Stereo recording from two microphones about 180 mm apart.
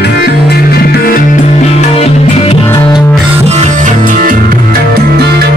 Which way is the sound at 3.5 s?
40° right (ahead or behind).